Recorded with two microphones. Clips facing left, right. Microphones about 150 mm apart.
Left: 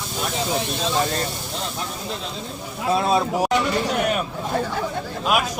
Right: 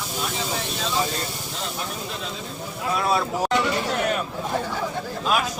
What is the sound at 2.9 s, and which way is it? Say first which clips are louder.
Speech: left 3 dB; 20° left (ahead or behind).